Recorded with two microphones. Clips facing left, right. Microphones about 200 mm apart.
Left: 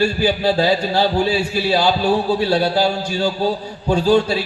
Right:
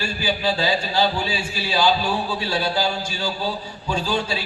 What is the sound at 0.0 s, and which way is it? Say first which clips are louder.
A man's voice: left 7 dB; 60° left (ahead or behind).